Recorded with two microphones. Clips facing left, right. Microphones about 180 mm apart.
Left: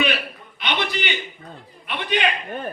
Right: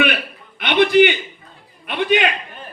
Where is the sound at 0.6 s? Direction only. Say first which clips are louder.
Right 13 dB; 55° right (ahead or behind).